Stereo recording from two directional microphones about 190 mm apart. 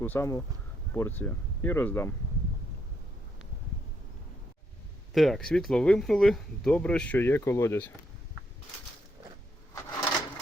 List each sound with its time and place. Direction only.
0.0 s speech: 10° left (ahead or behind)
5.1 s speech: centre (ahead or behind)